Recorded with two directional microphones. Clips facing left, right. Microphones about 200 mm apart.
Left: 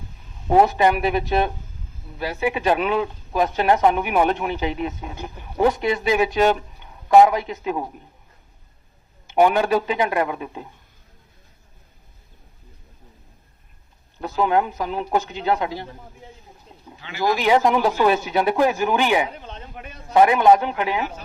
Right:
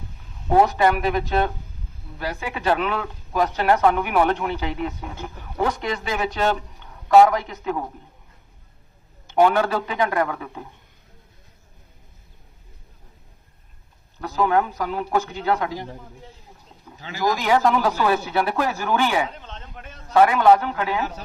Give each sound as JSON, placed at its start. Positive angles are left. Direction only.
{"t": 0.6, "sound": "speech", "side_deg": 15}
{"t": 9.2, "sound": "speech", "side_deg": 15}
{"t": 14.2, "sound": "a man's voice", "side_deg": 20}
{"t": 17.3, "sound": "speech", "side_deg": 20}